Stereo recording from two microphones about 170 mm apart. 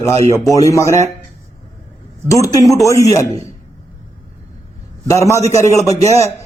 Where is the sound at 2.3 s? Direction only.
20° left (ahead or behind).